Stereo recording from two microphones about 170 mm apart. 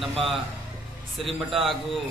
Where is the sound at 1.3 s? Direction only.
Centre (ahead or behind).